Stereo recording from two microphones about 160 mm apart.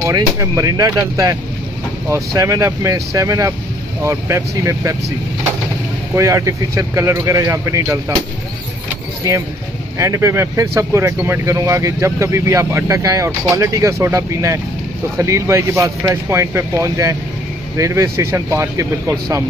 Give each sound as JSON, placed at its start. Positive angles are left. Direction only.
{"t": 0.0, "sound": "speech", "side_deg": -20}
{"t": 6.1, "sound": "speech", "side_deg": -20}
{"t": 9.9, "sound": "speech", "side_deg": -20}